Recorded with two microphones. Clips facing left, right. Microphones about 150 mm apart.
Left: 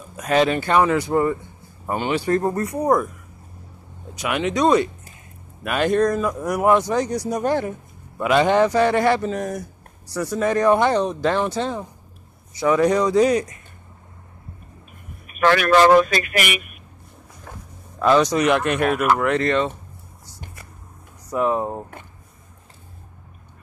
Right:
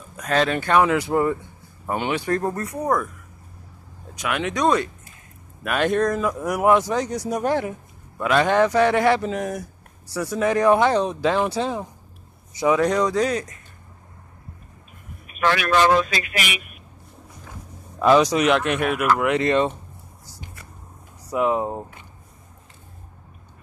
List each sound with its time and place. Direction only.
0.2 s speech: 10° left (ahead or behind)
4.1 s speech: 5° left (ahead or behind)
8.2 s speech: 10° left (ahead or behind); by 11.9 s 10° right (ahead or behind)
12.7 s speech: centre (ahead or behind)
15.2 s vehicle: 50° left (ahead or behind)
15.8 s a man's voice: 50° left (ahead or behind)
17.9 s speech: 5° right (ahead or behind)
21.3 s speech: 5° right (ahead or behind)